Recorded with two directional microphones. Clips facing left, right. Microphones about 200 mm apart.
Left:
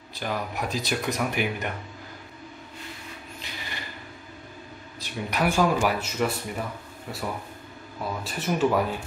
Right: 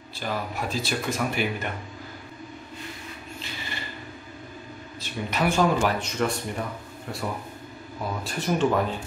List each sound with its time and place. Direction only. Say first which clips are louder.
0.2 s speech: even; 15° left (ahead or behind)
3.3 s a sound: right 2 dB; 15° left (ahead or behind)
5.0 s speech: even; 10° left (ahead or behind)